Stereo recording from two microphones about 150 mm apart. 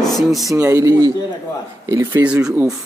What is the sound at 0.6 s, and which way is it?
Speech, 20° right (ahead or behind).